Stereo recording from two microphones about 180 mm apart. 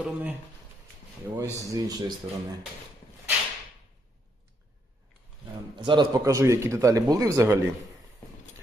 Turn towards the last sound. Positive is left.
turn(degrees=-15)  # may be behind; listen again after turning